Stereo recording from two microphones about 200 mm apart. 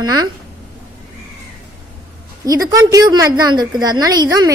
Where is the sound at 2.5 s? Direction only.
20° right (ahead or behind).